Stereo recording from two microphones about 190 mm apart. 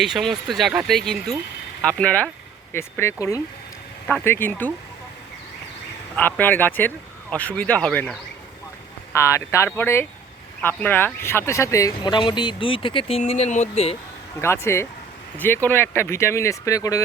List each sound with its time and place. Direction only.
0.0 s speech: centre (ahead or behind)
6.1 s speech: 10° left (ahead or behind)
9.1 s speech: 15° left (ahead or behind); by 13.9 s 35° left (ahead or behind)
14.4 s speech: 15° left (ahead or behind)